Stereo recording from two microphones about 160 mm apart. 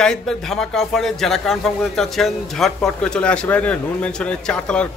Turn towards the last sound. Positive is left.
turn(degrees=5)  # may be behind; listen again after turning